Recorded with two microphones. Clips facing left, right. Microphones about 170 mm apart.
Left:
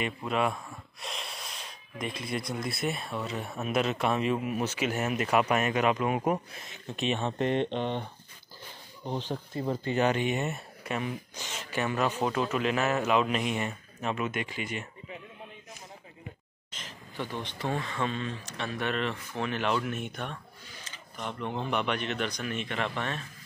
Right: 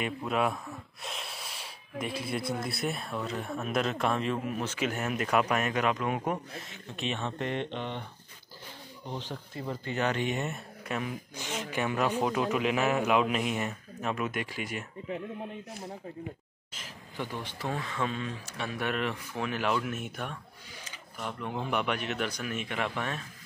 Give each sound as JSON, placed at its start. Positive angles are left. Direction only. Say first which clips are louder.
{"t": 0.0, "sound": "speech", "louder": "even", "side_deg": -5}
{"t": 9.1, "sound": "speech", "louder": "left 5 dB", "side_deg": 30}
{"t": 10.0, "sound": "speech", "louder": "left 1 dB", "side_deg": 5}
{"t": 11.3, "sound": "speech", "louder": "right 1 dB", "side_deg": -15}
{"t": 16.7, "sound": "speech", "louder": "left 1 dB", "side_deg": -10}